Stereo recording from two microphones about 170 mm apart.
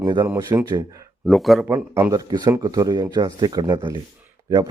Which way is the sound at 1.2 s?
Centre (ahead or behind).